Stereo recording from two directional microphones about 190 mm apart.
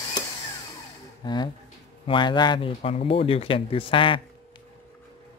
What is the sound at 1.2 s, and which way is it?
Speech, 20° left (ahead or behind).